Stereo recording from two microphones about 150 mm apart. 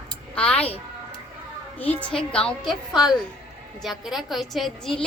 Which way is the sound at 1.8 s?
10° left (ahead or behind).